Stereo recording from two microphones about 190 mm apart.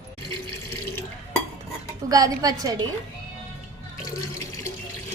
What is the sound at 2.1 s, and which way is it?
Speech, 20° right (ahead or behind).